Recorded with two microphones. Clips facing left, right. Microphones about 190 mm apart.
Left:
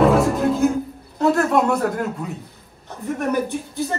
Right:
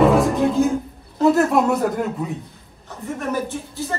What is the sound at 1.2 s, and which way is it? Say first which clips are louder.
Speech: right 2 dB; centre (ahead or behind).